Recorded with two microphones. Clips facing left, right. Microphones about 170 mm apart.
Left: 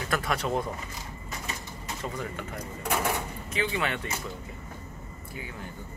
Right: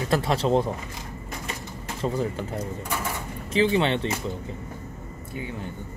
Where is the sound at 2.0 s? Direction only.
30° right (ahead or behind).